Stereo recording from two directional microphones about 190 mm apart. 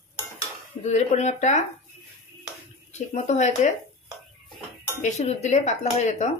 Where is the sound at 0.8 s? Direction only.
35° left (ahead or behind).